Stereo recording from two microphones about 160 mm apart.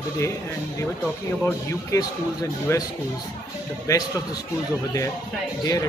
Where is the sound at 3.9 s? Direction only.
20° left (ahead or behind).